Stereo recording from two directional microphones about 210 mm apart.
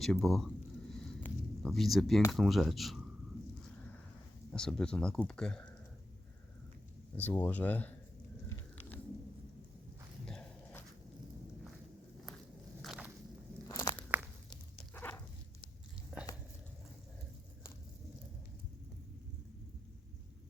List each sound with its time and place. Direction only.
0.0 s speech: centre (ahead or behind)
1.2 s a sound: centre (ahead or behind)
2.3 s speech: centre (ahead or behind)
4.5 s speech: 5° left (ahead or behind)
7.2 s speech: 10° left (ahead or behind)
10.2 s walk: 5° left (ahead or behind)
12.8 s walk: centre (ahead or behind)
13.7 s crunch: 20° left (ahead or behind)
14.1 s a sound: 10° right (ahead or behind)
14.9 s dog: 10° left (ahead or behind)